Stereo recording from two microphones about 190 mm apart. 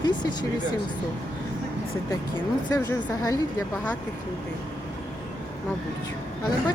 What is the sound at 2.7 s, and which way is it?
Speech, 20° left (ahead or behind).